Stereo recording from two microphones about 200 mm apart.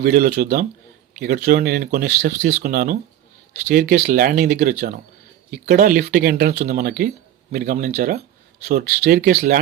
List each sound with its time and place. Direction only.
0.0 s speech: 55° right (ahead or behind)
9.3 s speech: 35° right (ahead or behind)